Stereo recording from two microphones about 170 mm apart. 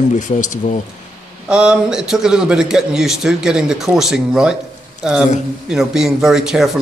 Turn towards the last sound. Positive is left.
turn(degrees=-5)  # may be behind; listen again after turning